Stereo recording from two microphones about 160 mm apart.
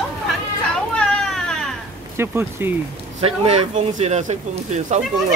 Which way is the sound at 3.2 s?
40° right (ahead or behind).